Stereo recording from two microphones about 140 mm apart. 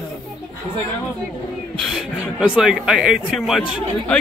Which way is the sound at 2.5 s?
5° right (ahead or behind).